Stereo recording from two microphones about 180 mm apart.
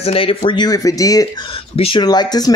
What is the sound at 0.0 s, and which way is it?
Speech, 30° left (ahead or behind).